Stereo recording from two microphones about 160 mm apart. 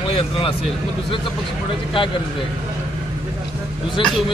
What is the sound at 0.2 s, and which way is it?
Speech, 35° left (ahead or behind).